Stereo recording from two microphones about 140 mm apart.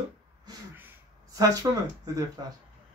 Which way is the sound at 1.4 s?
25° right (ahead or behind).